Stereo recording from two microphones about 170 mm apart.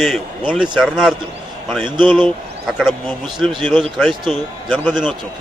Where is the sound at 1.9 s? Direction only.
25° right (ahead or behind).